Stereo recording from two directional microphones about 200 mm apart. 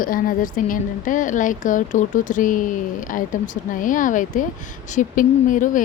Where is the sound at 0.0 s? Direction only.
45° left (ahead or behind).